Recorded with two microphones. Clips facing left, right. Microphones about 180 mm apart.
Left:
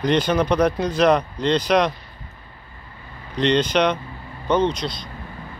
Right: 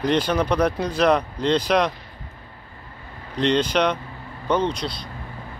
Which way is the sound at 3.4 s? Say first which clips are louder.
Left 1 dB; 5° right (ahead or behind).